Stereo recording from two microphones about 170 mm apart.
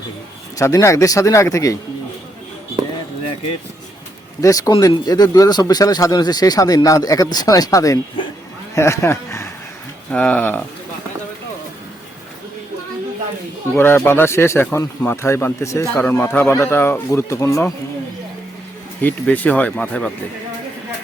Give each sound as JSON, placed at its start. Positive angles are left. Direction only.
{"t": 0.6, "sound": "speech", "side_deg": 15}
{"t": 4.4, "sound": "speech", "side_deg": 20}
{"t": 13.7, "sound": "speech", "side_deg": 15}
{"t": 19.0, "sound": "speech", "side_deg": 10}